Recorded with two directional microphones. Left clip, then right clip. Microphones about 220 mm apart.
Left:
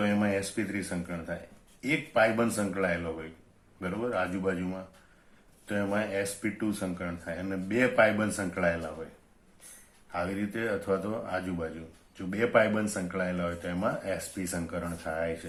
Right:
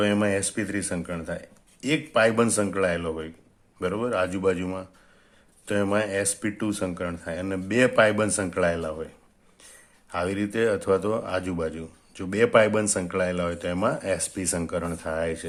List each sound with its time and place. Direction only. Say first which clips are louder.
0.0 s speech: right 5 dB; 50° right (ahead or behind)
10.1 s speech: right 6 dB; 50° right (ahead or behind)